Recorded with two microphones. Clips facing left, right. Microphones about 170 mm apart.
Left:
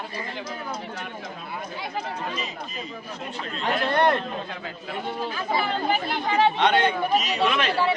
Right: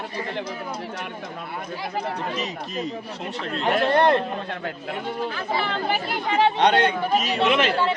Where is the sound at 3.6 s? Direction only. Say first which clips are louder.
Right 3 dB; 30° right (ahead or behind).